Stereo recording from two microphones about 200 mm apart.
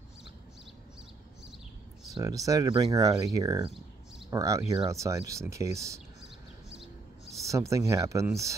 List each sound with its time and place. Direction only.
2.1 s speech: 15° right (ahead or behind)
7.4 s speech: 15° right (ahead or behind)